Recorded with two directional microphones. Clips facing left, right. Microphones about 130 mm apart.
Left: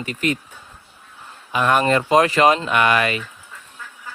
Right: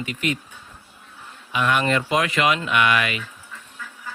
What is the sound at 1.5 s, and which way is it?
Speech, 40° left (ahead or behind).